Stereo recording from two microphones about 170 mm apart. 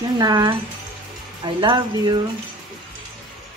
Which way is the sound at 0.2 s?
25° right (ahead or behind).